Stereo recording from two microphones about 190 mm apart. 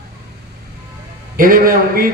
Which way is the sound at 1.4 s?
50° right (ahead or behind).